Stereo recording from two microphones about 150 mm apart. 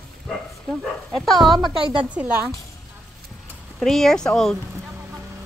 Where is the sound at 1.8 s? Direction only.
35° right (ahead or behind).